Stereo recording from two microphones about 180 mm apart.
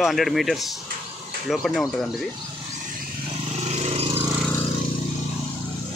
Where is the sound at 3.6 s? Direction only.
40° right (ahead or behind).